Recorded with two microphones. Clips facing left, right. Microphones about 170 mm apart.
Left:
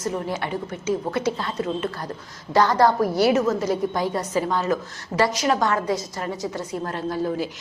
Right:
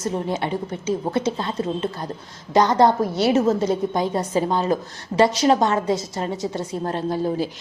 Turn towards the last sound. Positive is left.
turn(degrees=-30)  # may be behind; listen again after turning